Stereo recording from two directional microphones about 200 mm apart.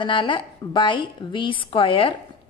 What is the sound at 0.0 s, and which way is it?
A woman's voice, 25° left (ahead or behind).